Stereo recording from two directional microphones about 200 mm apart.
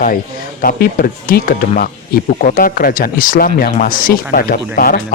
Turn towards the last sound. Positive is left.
turn(degrees=45)  # may be behind; listen again after turning